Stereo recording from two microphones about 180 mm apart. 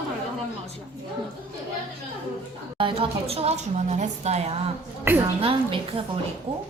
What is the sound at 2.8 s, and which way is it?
A woman's voice, 30° right (ahead or behind).